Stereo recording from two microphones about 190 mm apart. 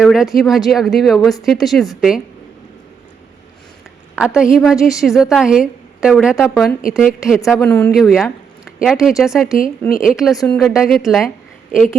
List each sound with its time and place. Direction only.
0.0 s a woman's voice: centre (ahead or behind)
4.1 s a woman's voice: 5° right (ahead or behind)
6.3 s speech: 15° left (ahead or behind)
6.9 s a woman's voice: 5° right (ahead or behind)